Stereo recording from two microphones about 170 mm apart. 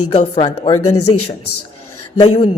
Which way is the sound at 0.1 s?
30° left (ahead or behind).